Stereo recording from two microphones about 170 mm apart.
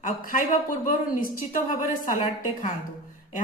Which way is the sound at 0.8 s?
55° left (ahead or behind).